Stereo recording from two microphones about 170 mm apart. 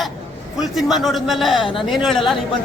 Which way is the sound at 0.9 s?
Centre (ahead or behind).